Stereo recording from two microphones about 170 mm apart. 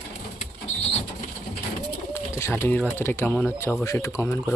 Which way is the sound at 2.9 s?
15° left (ahead or behind).